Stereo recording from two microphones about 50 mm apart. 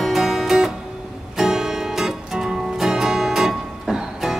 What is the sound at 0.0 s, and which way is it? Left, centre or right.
Music, centre.